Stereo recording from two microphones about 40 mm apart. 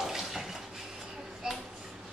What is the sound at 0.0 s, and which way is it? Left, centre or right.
Bathtub, centre.